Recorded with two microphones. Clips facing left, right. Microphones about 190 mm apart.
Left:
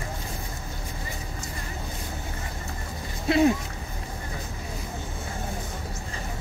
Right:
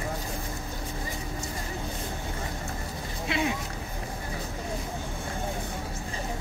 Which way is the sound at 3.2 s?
40° left (ahead or behind).